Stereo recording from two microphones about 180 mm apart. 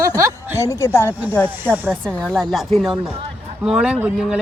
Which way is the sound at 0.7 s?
15° left (ahead or behind).